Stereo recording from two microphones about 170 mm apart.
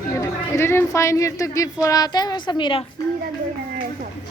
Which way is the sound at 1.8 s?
20° left (ahead or behind).